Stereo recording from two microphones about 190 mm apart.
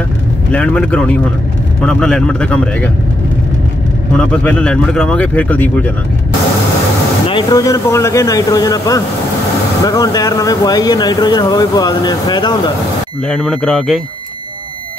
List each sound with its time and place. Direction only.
0.5 s speech: 5° left (ahead or behind)
4.2 s speech: 5° left (ahead or behind)
7.2 s speech: 25° left (ahead or behind)
13.3 s speech: 5° left (ahead or behind)